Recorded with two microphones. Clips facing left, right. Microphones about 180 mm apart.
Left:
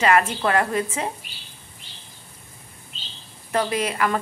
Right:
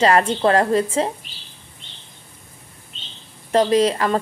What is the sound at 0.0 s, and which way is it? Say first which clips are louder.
A woman's voice: right 4 dB; 30° right (ahead or behind).